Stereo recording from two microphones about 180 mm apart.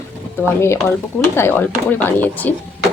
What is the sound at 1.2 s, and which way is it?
Speech, 10° left (ahead or behind).